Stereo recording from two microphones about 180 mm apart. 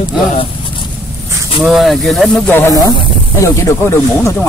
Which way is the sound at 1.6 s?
Centre (ahead or behind).